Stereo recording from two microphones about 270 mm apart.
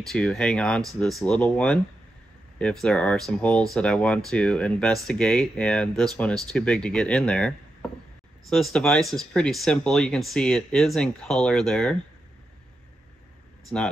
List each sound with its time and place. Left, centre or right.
0.1 s speech: centre